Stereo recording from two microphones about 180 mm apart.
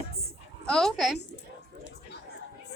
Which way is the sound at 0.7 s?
Centre (ahead or behind).